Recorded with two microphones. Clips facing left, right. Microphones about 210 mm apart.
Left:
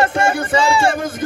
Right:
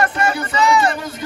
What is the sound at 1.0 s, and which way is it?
Speech, 50° left (ahead or behind).